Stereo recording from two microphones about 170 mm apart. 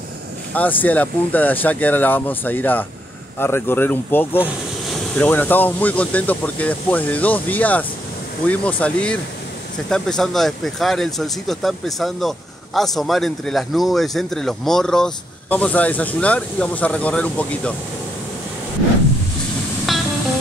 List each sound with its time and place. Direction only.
0.5 s speech: 10° left (ahead or behind)
19.9 s music: centre (ahead or behind)